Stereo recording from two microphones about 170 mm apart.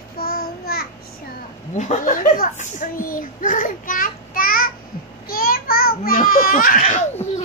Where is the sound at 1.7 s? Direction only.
45° left (ahead or behind).